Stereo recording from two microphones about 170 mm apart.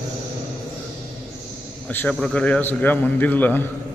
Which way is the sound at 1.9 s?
10° left (ahead or behind).